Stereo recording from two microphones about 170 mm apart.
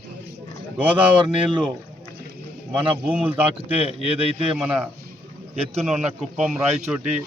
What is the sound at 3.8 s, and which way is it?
Speech, 35° left (ahead or behind).